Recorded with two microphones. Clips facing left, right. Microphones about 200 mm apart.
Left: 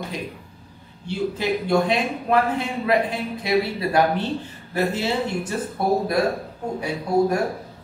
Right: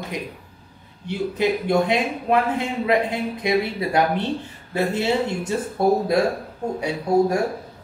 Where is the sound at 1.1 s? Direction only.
20° right (ahead or behind).